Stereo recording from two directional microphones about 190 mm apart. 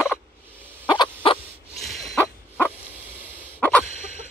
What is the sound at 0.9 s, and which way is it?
Fowl, 25° left (ahead or behind).